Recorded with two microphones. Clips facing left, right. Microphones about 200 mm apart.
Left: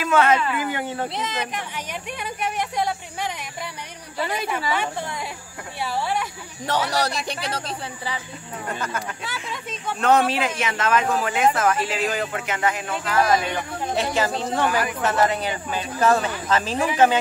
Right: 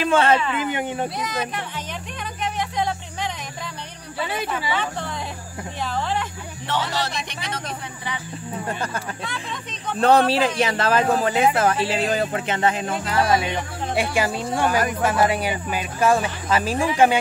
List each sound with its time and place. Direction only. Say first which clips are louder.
0.0 s a woman's voice: right 1 dB; 30° right (ahead or behind)
1.1 s a sound: right 1 dB; 25° left (ahead or behind)
4.7 s speech: even; 10° left (ahead or behind)
6.7 s speech: left 2 dB; 40° left (ahead or behind)
9.2 s speech: right 1 dB; 5° left (ahead or behind)
9.9 s speech: right 3 dB; 35° right (ahead or behind)
13.9 s speech: right 1 dB; 10° right (ahead or behind)